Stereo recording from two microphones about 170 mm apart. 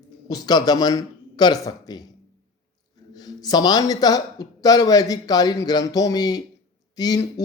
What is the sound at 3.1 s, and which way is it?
A man's voice, 20° left (ahead or behind).